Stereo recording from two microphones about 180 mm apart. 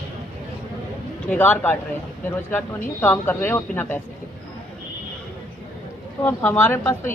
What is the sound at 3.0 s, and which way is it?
Speech, 10° left (ahead or behind).